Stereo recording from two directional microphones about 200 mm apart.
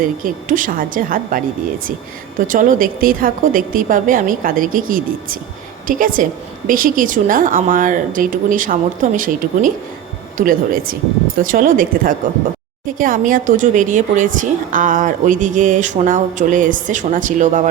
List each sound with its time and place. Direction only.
0.0 s speech: 40° right (ahead or behind)
2.5 s speech: 40° right (ahead or behind)